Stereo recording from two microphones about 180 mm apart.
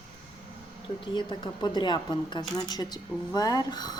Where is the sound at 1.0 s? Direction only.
25° left (ahead or behind).